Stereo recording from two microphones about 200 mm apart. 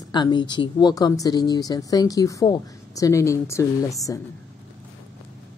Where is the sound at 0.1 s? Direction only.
20° left (ahead or behind).